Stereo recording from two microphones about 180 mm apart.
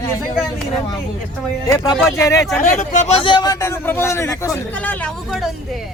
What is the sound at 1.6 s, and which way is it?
Speech, 20° left (ahead or behind).